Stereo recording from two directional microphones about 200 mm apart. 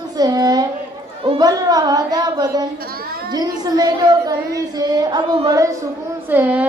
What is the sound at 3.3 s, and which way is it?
Child singing, 20° right (ahead or behind).